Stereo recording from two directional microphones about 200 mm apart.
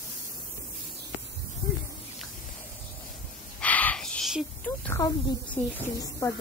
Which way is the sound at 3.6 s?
5° left (ahead or behind).